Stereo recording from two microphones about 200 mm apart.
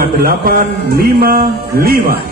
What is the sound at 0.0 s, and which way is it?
Speech, 45° right (ahead or behind).